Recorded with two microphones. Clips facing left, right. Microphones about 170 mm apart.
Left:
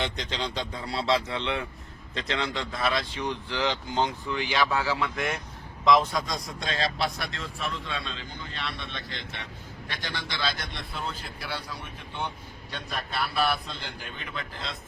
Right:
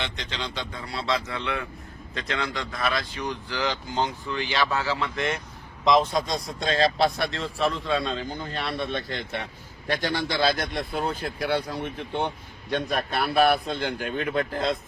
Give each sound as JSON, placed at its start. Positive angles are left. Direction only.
{"t": 0.0, "sound": "speech", "side_deg": 35}
{"t": 5.8, "sound": "a man's voice", "side_deg": -20}